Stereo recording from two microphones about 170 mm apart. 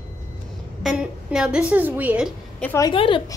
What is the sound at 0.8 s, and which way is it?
A woman's voice, 5° right (ahead or behind).